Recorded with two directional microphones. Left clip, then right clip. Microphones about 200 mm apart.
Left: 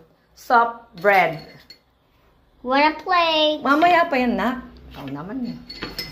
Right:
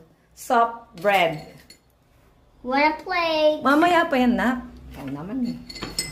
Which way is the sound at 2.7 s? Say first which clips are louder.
Left 3 dB; 20° left (ahead or behind).